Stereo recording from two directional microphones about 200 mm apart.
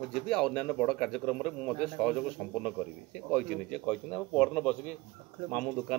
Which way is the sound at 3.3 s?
Centre (ahead or behind).